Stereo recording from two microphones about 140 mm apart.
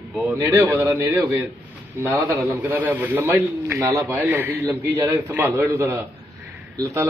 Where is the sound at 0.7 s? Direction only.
20° right (ahead or behind).